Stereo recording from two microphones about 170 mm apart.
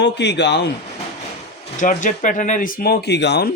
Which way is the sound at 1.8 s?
50° left (ahead or behind).